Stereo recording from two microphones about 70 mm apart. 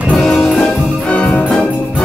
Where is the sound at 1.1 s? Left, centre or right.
Centre.